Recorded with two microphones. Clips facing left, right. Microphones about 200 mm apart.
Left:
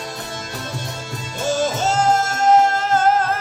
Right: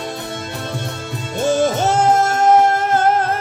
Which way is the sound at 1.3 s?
60° right (ahead or behind).